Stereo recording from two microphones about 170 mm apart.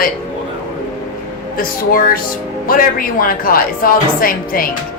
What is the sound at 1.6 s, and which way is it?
A woman's voice, 55° left (ahead or behind).